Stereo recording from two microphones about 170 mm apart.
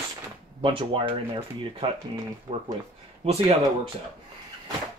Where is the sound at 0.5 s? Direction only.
30° right (ahead or behind).